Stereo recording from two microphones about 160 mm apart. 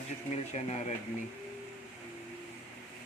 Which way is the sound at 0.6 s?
45° left (ahead or behind).